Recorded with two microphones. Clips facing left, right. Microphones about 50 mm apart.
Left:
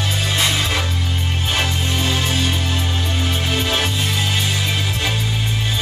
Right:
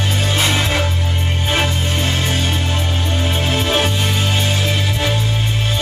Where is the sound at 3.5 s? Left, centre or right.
Right.